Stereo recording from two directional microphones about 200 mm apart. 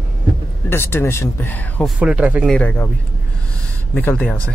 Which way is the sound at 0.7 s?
10° left (ahead or behind).